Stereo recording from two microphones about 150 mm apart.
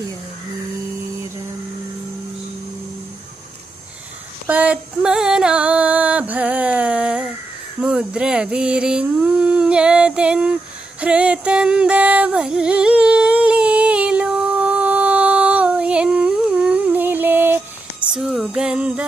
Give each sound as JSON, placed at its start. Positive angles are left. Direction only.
{"t": 4.5, "sound": "music", "side_deg": -10}
{"t": 7.8, "sound": "a sound", "side_deg": -5}
{"t": 18.1, "sound": "music", "side_deg": -5}